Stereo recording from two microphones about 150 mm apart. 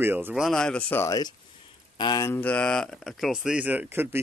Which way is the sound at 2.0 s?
30° left (ahead or behind).